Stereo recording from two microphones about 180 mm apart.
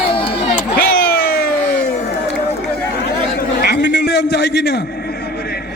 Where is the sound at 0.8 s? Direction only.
55° left (ahead or behind).